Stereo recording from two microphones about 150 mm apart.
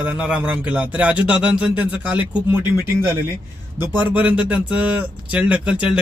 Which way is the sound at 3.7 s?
10° right (ahead or behind).